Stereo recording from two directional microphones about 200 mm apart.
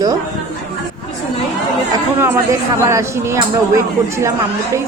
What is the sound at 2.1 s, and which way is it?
Speech, 10° right (ahead or behind).